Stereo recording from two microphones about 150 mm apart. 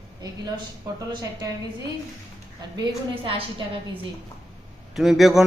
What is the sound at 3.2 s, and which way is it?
Speech, 35° right (ahead or behind).